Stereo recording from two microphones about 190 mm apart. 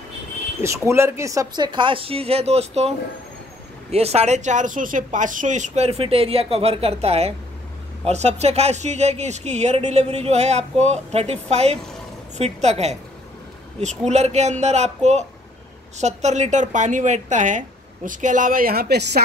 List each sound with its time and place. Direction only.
0.6 s speech: 15° right (ahead or behind); by 2.9 s 35° right (ahead or behind)
3.9 s speech: 35° right (ahead or behind); by 19.2 s 60° right (ahead or behind)